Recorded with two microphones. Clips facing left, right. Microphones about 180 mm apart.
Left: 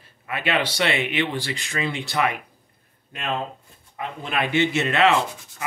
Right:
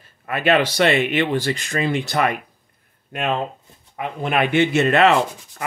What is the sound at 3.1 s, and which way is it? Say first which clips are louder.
Speech: right 5 dB; 60° right (ahead or behind).